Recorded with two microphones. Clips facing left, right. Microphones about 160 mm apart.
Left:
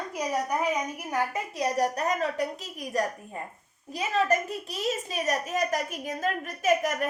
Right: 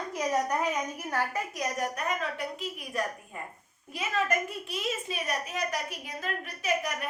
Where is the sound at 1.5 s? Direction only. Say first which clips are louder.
Left 6 dB; 35° left (ahead or behind).